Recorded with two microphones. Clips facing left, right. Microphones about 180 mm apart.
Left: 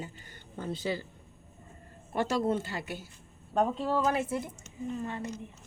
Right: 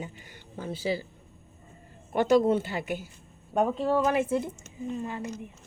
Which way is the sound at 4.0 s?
20° right (ahead or behind).